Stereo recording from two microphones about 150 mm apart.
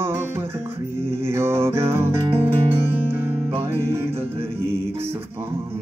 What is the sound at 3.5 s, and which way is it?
Music, 15° right (ahead or behind).